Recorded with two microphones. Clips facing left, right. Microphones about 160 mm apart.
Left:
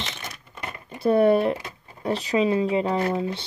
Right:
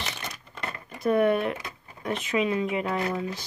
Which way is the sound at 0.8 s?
30° left (ahead or behind).